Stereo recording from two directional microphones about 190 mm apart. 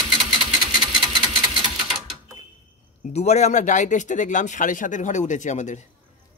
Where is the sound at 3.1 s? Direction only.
35° left (ahead or behind).